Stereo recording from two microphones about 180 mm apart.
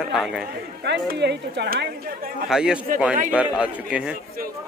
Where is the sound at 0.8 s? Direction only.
70° right (ahead or behind); by 2.3 s 55° right (ahead or behind).